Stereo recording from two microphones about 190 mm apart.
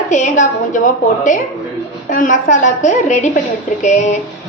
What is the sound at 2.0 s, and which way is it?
A woman's voice, 45° left (ahead or behind).